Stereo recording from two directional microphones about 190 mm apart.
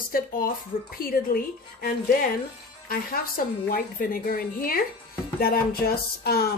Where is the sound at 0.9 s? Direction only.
50° left (ahead or behind).